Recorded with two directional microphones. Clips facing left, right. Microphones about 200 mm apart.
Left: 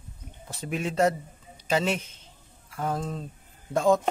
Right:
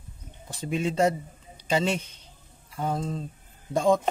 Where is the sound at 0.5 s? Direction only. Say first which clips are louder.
Right 3 dB; 5° left (ahead or behind).